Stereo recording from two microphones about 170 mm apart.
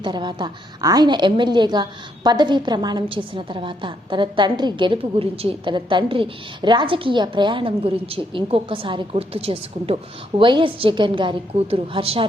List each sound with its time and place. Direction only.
0.0 s a woman's voice: 25° right (ahead or behind)